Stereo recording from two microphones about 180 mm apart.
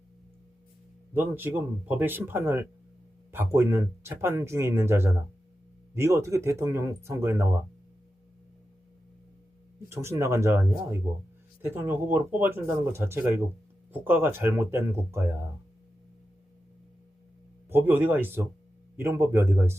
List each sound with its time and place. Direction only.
1.1 s speech: 10° right (ahead or behind)
9.9 s speech: 15° right (ahead or behind)
17.7 s speech: 10° right (ahead or behind)